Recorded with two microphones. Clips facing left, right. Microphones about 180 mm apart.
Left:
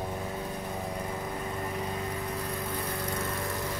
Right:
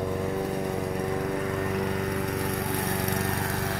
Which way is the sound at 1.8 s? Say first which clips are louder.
Right 6 dB; 70° right (ahead or behind).